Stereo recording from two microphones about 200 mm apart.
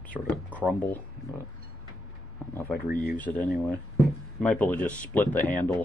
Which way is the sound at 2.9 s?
45° left (ahead or behind).